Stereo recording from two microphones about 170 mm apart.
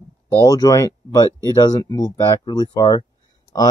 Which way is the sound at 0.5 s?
20° left (ahead or behind).